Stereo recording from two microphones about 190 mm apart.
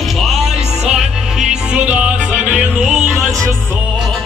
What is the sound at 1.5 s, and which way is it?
Music, 5° right (ahead or behind).